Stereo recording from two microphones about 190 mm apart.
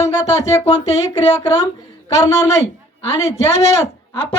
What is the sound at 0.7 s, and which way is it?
Speech, 35° left (ahead or behind).